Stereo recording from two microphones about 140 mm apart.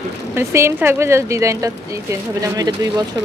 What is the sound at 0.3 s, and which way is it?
Speech, 20° right (ahead or behind).